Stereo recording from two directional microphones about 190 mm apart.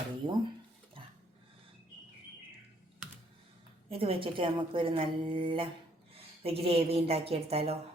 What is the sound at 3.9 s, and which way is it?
A woman's voice, 30° right (ahead or behind).